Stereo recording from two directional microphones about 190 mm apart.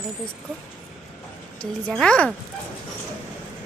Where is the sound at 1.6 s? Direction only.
5° left (ahead or behind).